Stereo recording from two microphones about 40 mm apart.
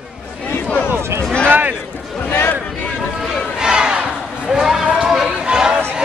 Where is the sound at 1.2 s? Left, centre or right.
Left.